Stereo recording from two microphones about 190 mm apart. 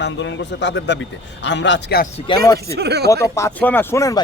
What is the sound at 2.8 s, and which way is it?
Speech, 60° right (ahead or behind).